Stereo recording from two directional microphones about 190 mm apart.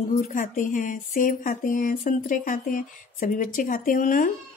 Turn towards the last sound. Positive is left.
turn(degrees=45)  # may be behind; listen again after turning